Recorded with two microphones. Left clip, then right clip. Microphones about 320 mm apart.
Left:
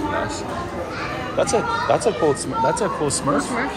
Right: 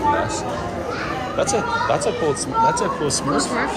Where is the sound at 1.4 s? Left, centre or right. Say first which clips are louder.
Left 1 dB; centre.